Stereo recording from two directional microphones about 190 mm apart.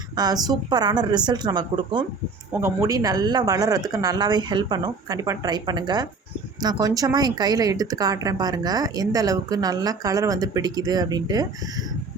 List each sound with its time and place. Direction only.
0.2 s speech: 20° right (ahead or behind)